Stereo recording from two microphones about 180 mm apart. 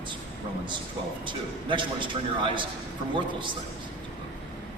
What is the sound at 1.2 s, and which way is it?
A man's voice, 25° right (ahead or behind).